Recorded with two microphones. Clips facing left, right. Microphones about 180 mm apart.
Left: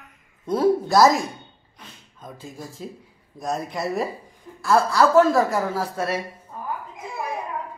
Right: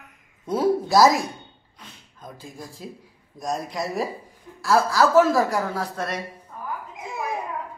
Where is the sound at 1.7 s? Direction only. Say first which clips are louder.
Left 1 dB; centre (ahead or behind).